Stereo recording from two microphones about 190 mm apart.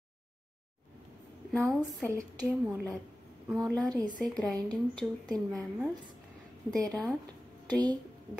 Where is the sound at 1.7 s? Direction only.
Centre (ahead or behind).